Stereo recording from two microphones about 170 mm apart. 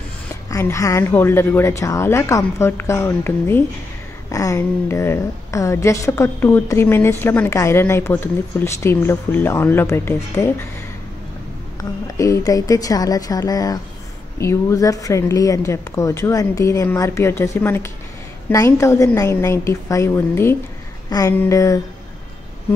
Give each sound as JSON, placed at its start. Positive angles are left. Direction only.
{"t": 0.5, "sound": "a woman's voice", "side_deg": 15}
{"t": 12.2, "sound": "a woman's voice", "side_deg": 20}